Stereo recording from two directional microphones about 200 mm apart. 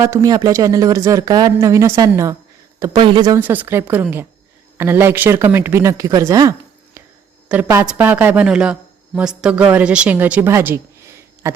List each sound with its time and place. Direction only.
0.0 s speech: 15° right (ahead or behind)